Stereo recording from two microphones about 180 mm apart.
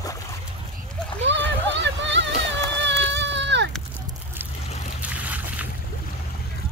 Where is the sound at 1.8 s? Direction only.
85° right.